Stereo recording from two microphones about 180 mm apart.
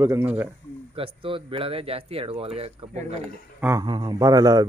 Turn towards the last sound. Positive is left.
turn(degrees=-20)  # may be behind; listen again after turning